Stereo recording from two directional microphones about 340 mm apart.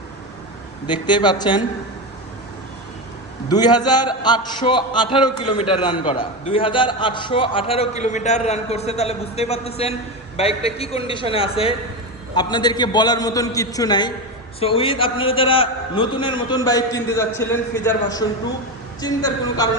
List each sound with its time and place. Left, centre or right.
0.9 s a man's voice: centre
3.5 s a man's voice: centre